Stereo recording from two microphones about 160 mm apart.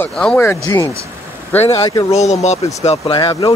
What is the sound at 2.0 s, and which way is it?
Speech, 45° left (ahead or behind).